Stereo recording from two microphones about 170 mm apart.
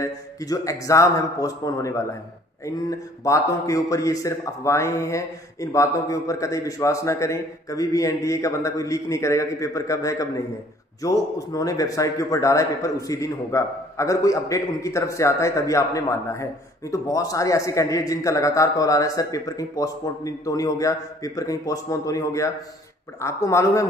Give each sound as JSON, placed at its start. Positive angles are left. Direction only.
{"t": 0.0, "sound": "a man's voice", "side_deg": 20}